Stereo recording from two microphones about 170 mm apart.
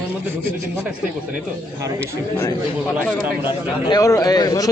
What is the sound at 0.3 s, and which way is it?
Speech, 15° right (ahead or behind).